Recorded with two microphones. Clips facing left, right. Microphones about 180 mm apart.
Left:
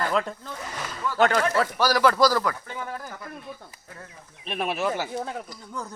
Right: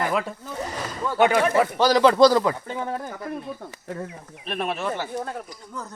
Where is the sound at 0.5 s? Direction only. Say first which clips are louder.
Right 5 dB; 25° right (ahead or behind).